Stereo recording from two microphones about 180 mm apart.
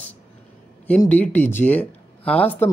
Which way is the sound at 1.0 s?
10° left (ahead or behind).